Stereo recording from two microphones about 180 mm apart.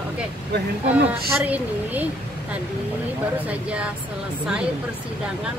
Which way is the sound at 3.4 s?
5° right (ahead or behind).